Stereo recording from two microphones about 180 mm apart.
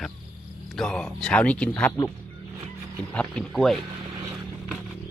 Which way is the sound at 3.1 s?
5° left (ahead or behind).